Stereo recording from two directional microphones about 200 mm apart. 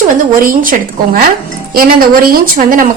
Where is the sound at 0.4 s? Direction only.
45° right (ahead or behind).